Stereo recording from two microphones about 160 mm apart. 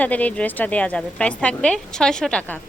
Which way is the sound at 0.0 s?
10° left (ahead or behind).